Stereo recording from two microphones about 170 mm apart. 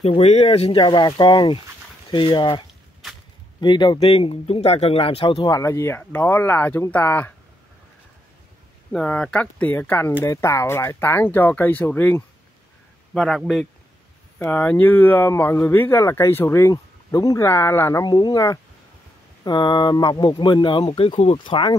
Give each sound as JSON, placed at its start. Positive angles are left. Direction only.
{"t": 0.0, "sound": "speech", "side_deg": 35}
{"t": 3.0, "sound": "a sound", "side_deg": 0}
{"t": 3.6, "sound": "speech", "side_deg": 25}
{"t": 8.9, "sound": "a man's voice", "side_deg": 5}